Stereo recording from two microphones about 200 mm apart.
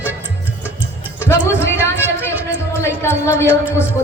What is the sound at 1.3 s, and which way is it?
Speech, 15° left (ahead or behind).